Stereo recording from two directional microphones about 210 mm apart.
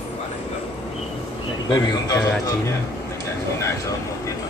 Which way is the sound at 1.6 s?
20° left (ahead or behind).